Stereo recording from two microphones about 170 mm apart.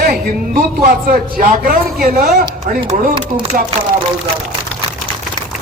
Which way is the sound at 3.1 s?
30° right (ahead or behind).